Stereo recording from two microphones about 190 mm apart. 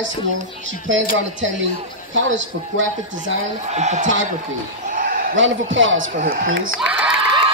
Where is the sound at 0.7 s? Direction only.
85° right.